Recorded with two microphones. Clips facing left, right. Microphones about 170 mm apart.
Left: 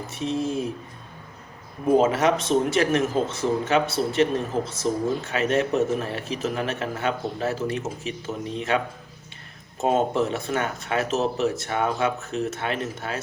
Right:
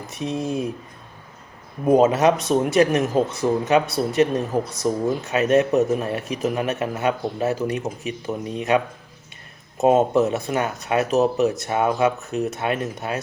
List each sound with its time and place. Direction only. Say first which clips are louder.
0.1 s speech: right 1 dB; 15° right (ahead or behind)
1.9 s speech: right 3 dB; 20° right (ahead or behind)
9.8 s speech: right 5 dB; 20° right (ahead or behind)